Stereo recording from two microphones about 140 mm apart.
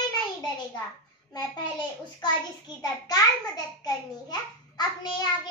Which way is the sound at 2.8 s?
30° left (ahead or behind).